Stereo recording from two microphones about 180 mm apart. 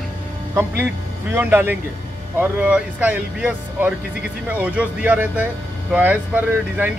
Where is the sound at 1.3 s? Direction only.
10° right (ahead or behind).